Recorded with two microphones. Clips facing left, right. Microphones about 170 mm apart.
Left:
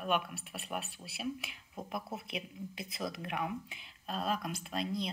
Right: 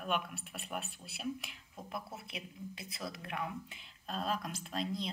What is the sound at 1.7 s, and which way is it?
Speech, 20° left (ahead or behind).